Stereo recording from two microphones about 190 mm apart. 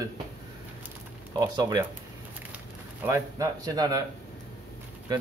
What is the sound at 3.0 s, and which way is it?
Speech, 15° right (ahead or behind).